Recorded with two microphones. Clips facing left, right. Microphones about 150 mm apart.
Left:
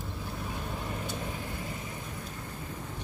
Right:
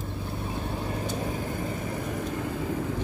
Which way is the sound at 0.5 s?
30° right (ahead or behind).